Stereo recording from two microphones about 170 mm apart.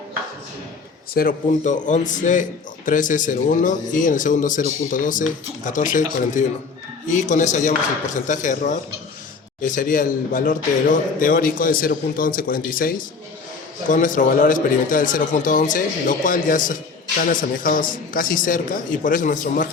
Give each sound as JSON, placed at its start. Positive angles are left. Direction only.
{"t": 1.1, "sound": "speech", "side_deg": 55}